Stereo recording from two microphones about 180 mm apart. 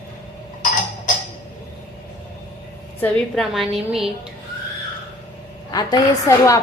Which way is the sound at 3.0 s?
Centre (ahead or behind).